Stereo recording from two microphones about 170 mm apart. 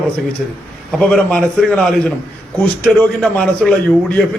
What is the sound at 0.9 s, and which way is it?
A man's voice, 5° left (ahead or behind).